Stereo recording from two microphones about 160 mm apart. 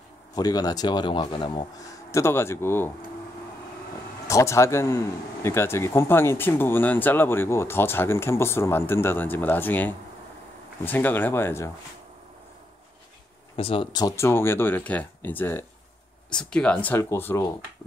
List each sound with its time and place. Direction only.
0.4 s speech: 25° left (ahead or behind)
2.0 s speech: 15° left (ahead or behind)
4.3 s speech: 20° left (ahead or behind)
13.6 s speech: 35° left (ahead or behind)
14.0 s speech: 15° left (ahead or behind)